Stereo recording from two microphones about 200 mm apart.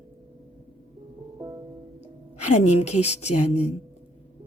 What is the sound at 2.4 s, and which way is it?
A woman's voice, 35° left (ahead or behind).